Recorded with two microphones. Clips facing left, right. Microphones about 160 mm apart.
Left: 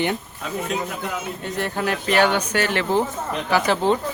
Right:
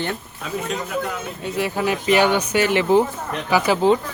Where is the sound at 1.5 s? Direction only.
5° right (ahead or behind).